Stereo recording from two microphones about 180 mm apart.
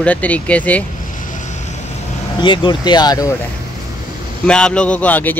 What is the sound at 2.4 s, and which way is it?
Speech, 25° left (ahead or behind).